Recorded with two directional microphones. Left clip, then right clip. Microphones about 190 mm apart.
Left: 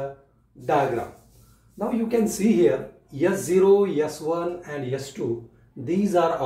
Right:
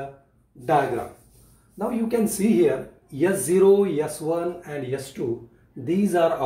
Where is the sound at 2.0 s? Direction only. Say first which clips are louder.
Left 1 dB; 20° right (ahead or behind).